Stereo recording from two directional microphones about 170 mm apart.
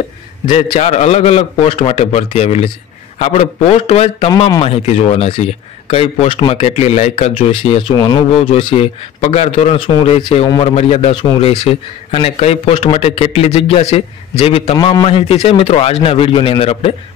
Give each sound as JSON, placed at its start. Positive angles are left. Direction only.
{"t": 0.7, "sound": "a man's voice", "side_deg": 40}